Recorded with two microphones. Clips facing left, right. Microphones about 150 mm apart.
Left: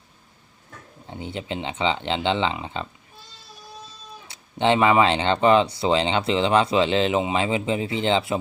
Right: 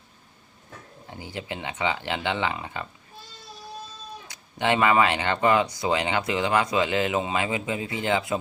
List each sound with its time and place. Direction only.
1.1 s speech: 25° left (ahead or behind)
4.3 s speech: 25° left (ahead or behind)